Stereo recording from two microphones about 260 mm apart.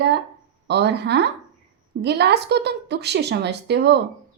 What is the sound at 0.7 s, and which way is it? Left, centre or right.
A woman's voice, right.